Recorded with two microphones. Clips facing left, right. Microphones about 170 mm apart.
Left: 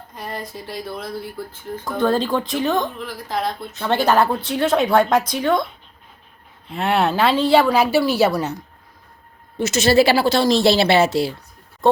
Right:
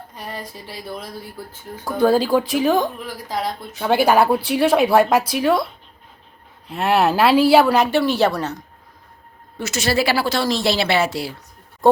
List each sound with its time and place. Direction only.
0.2 s speech: 10° right (ahead or behind)
6.7 s a woman's voice: centre (ahead or behind)
9.6 s a woman's voice: 20° left (ahead or behind)